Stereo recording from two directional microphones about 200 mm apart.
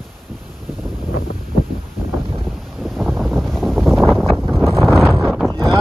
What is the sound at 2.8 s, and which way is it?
Wind noise, centre (ahead or behind).